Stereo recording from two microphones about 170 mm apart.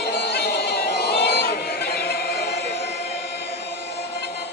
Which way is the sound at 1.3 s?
65° left (ahead or behind).